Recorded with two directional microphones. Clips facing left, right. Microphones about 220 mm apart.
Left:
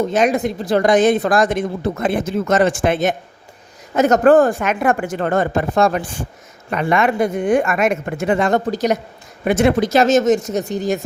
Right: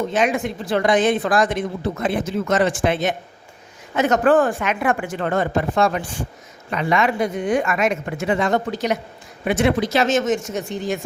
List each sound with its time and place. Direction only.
0.1 s speech: 40° left (ahead or behind)